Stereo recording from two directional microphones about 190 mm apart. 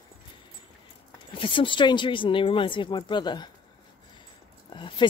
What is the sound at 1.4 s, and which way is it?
Speech, 25° left (ahead or behind).